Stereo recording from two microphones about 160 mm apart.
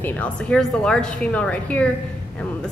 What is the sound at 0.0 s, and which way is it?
A woman's voice, 10° left (ahead or behind).